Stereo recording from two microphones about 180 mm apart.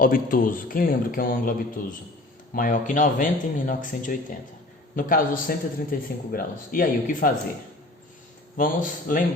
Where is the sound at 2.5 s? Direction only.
50° left (ahead or behind).